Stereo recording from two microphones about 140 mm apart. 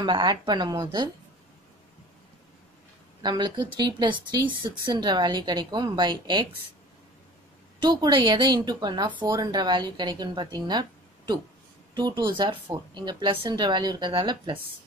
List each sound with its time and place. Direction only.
0.0 s speech: 30° right (ahead or behind)
3.2 s speech: 30° right (ahead or behind)
7.8 s speech: 35° right (ahead or behind)